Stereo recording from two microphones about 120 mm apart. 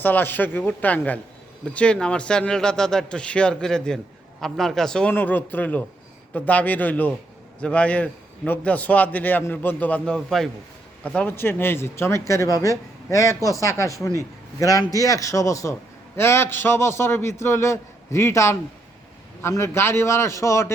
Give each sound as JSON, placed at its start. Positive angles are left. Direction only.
{"t": 0.0, "sound": "a man's voice", "side_deg": 15}
{"t": 10.2, "sound": "a man's voice", "side_deg": 0}